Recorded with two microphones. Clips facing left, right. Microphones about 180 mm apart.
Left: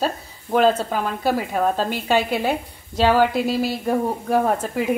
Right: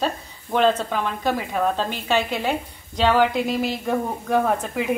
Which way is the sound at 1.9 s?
10° left (ahead or behind).